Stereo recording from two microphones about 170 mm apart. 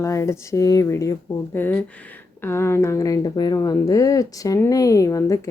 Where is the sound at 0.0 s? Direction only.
15° left (ahead or behind).